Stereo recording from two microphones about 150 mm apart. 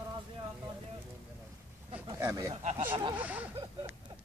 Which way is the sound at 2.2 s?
20° right (ahead or behind).